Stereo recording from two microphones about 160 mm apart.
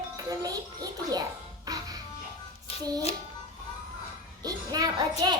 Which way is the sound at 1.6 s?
25° right (ahead or behind).